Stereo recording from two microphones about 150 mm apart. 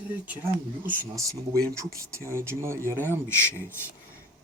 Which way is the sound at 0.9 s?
20° right (ahead or behind).